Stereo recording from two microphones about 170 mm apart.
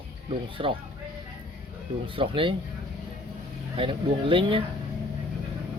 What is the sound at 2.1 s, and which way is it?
Speech, 30° right (ahead or behind).